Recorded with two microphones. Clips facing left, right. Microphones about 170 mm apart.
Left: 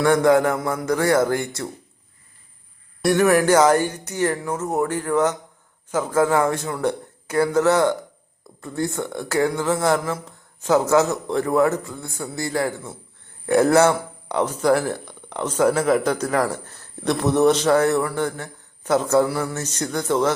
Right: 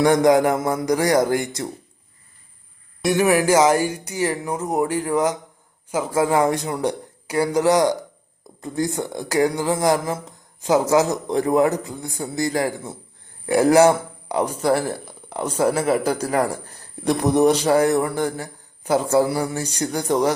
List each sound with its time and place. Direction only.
0.0 s speech: 20° right (ahead or behind)
3.0 s speech: 5° right (ahead or behind)
14.8 s speech: 30° right (ahead or behind)
15.3 s speech: 10° right (ahead or behind)